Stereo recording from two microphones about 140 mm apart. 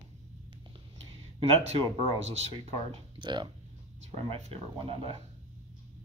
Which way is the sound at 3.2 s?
35° right (ahead or behind).